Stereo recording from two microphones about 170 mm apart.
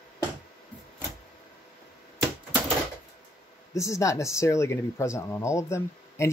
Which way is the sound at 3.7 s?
20° left (ahead or behind).